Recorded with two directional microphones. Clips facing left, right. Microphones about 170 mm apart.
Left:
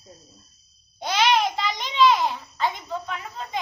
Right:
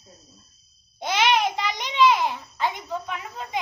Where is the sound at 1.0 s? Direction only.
20° right (ahead or behind).